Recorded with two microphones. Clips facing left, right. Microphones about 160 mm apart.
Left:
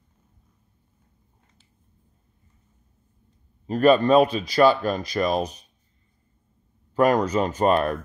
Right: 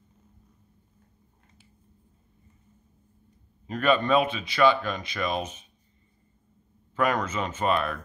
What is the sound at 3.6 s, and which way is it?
Speech, 35° left (ahead or behind).